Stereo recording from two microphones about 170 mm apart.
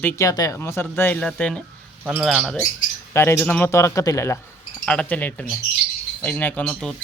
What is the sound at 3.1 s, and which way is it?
Speech, 15° left (ahead or behind).